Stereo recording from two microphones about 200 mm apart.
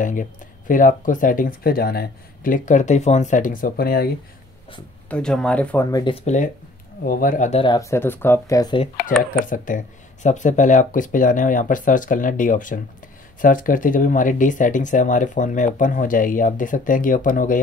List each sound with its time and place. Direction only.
0.0 s speech: 40° left (ahead or behind)
5.1 s speech: 5° left (ahead or behind)
6.2 s speech: 35° left (ahead or behind)
7.6 s speech: 20° left (ahead or behind)
9.3 s speech: 40° left (ahead or behind)